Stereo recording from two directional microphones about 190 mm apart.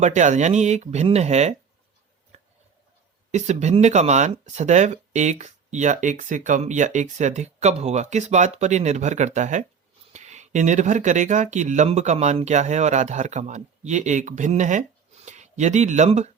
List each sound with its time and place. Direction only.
0.0 s speech: 40° right (ahead or behind)
2.3 s a sound: 35° right (ahead or behind)
3.3 s speech: 40° right (ahead or behind)